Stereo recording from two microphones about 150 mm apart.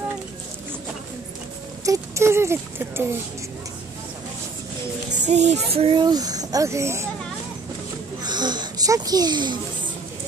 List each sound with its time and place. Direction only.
1.9 s speech: 20° right (ahead or behind)
5.2 s speech: 50° right (ahead or behind); by 7.1 s 20° right (ahead or behind)
8.2 s a child's voice: 30° right (ahead or behind)